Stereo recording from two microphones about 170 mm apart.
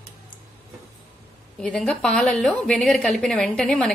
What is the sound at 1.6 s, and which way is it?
A woman's voice, 5° left (ahead or behind).